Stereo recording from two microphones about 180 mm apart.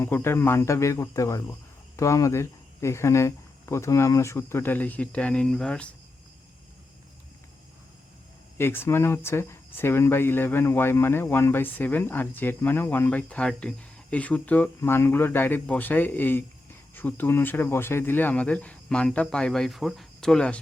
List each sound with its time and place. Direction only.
0.0 s speech: 15° left (ahead or behind)
8.5 s speech: 15° left (ahead or behind)